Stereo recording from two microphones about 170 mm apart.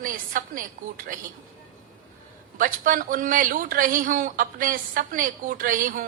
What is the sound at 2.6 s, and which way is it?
Speech, 55° right (ahead or behind).